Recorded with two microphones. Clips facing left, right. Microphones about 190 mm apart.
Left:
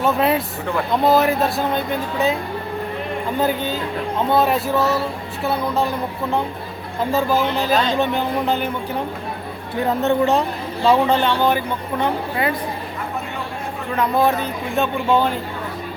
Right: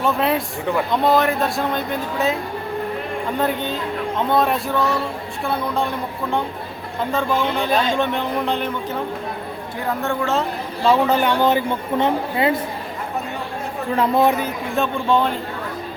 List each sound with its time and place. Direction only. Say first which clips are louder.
0.0 s speech: left 2 dB; centre (ahead or behind)
3.3 s speech: left 2 dB; centre (ahead or behind)
7.1 s speech: left 2 dB; 5° left (ahead or behind)
9.8 s speech: left 5 dB; 20° left (ahead or behind)
11.1 s a woman's voice: even; 10° right (ahead or behind)
13.9 s a woman's voice: right 1 dB; 30° right (ahead or behind)
14.3 s speech: right 1 dB; 10° right (ahead or behind)
14.8 s speech: left 1 dB; centre (ahead or behind)